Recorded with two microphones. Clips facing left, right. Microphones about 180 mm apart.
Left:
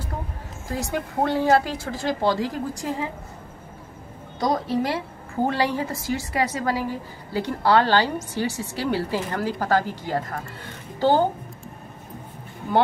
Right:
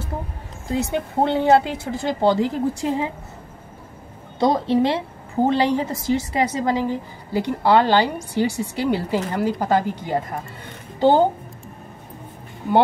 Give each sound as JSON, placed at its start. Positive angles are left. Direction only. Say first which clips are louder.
{"t": 0.7, "sound": "speech", "louder": "right 5 dB", "side_deg": -20}
{"t": 4.4, "sound": "a woman's voice", "louder": "right 5 dB", "side_deg": -25}